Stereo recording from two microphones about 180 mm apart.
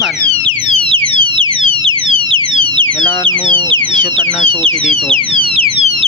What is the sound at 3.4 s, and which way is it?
Speech, 25° right (ahead or behind).